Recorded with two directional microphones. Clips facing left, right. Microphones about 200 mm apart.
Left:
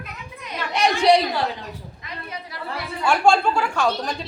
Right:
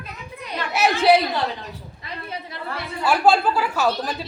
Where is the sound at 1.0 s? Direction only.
5° right (ahead or behind).